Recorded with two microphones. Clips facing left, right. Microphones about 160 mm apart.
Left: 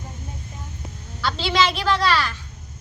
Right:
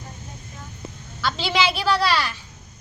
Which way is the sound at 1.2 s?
Centre (ahead or behind).